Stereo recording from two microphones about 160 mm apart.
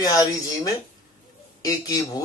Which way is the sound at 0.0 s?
20° left (ahead or behind).